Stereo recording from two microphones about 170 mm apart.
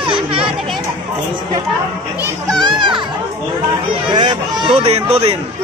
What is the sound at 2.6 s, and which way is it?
Music, 30° right (ahead or behind).